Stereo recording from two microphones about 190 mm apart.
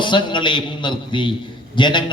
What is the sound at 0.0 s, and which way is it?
A man's voice, 25° left (ahead or behind).